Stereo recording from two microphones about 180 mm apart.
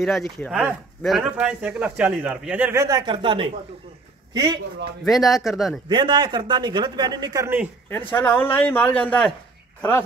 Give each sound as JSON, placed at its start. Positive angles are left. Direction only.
{"t": 0.5, "sound": "a man's voice", "side_deg": -5}
{"t": 5.0, "sound": "speech", "side_deg": 0}
{"t": 5.9, "sound": "a man's voice", "side_deg": -25}
{"t": 8.1, "sound": "a man's voice", "side_deg": 10}